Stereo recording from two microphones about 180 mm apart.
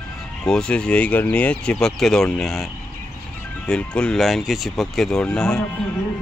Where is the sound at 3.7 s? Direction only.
5° left (ahead or behind).